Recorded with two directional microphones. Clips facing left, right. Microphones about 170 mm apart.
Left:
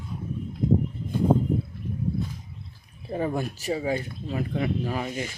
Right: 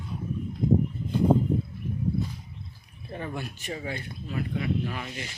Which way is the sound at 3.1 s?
40° left (ahead or behind).